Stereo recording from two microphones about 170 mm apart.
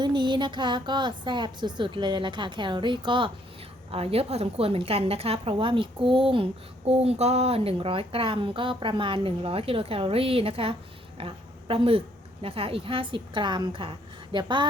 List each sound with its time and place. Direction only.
0.0 s a woman's voice: 25° right (ahead or behind)